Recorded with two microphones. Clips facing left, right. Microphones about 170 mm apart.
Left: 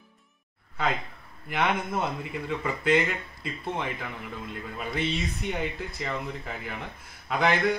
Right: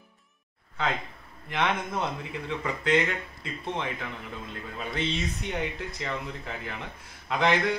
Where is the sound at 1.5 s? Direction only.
5° left (ahead or behind).